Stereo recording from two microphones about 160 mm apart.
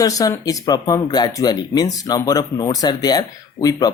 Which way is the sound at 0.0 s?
20° left (ahead or behind).